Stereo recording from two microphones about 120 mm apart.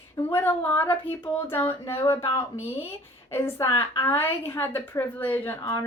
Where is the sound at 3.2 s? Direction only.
20° left (ahead or behind).